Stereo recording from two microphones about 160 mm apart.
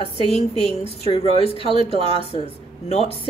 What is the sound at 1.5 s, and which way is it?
Speech, 35° right (ahead or behind).